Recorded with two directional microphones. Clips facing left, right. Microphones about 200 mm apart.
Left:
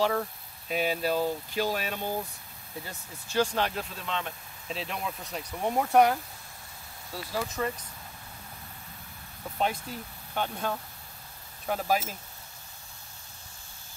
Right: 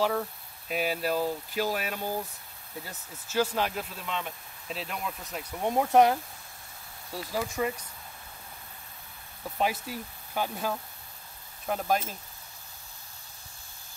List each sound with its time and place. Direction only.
0.0 s speech: centre (ahead or behind)
5.8 s speech: 20° right (ahead or behind)
7.3 s speech: 10° right (ahead or behind)
9.6 s speech: 5° right (ahead or behind)